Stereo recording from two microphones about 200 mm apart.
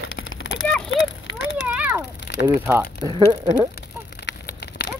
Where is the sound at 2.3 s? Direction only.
55° left (ahead or behind).